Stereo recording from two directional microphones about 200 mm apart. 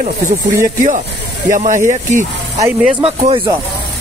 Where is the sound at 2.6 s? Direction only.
10° right (ahead or behind).